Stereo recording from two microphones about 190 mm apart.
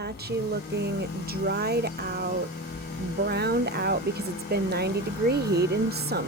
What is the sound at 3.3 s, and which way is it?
A woman's voice, 60° right (ahead or behind).